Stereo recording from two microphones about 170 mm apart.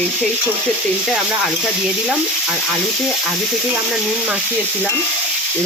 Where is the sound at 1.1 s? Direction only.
Centre (ahead or behind).